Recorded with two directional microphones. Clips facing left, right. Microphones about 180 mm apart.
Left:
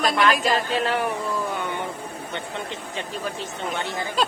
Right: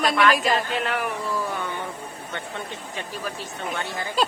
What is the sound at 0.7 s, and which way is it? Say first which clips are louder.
Speech: left 3 dB; 30° left (ahead or behind).